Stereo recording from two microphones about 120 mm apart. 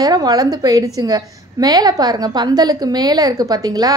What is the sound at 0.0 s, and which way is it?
A woman's voice, 35° right (ahead or behind).